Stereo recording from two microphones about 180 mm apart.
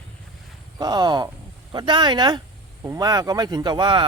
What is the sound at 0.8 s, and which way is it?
Speech, 20° right (ahead or behind).